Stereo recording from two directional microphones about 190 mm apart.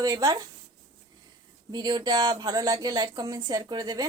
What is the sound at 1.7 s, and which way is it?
Speech, 20° right (ahead or behind).